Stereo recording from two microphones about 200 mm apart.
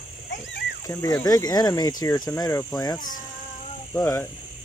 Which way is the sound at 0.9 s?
15° left (ahead or behind).